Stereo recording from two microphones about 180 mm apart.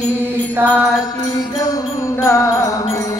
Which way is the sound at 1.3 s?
20° left (ahead or behind).